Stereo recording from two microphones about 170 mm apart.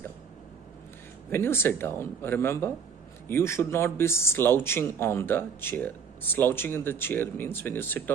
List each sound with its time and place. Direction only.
1.3 s speech: 15° left (ahead or behind)